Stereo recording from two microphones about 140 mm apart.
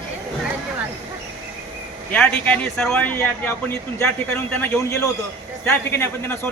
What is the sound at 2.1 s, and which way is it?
A man's voice, 5° left (ahead or behind).